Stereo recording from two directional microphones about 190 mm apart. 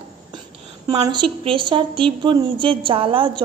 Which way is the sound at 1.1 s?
25° right (ahead or behind).